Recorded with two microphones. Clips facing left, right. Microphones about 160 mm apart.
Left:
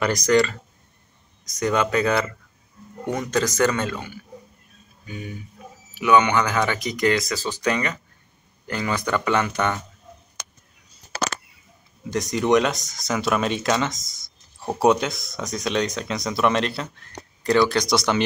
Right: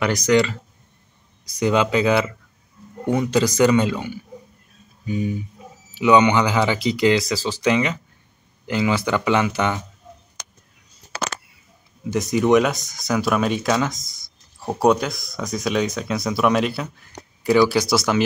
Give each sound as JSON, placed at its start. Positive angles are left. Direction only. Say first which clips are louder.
{"t": 0.0, "sound": "speech", "louder": "right 1 dB", "side_deg": -5}
{"t": 1.6, "sound": "speech", "louder": "right 3 dB", "side_deg": -10}
{"t": 12.1, "sound": "speech", "louder": "right 3 dB", "side_deg": -5}